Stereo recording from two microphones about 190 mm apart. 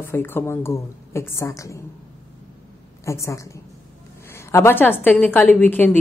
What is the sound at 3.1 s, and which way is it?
A woman's voice, 15° left (ahead or behind).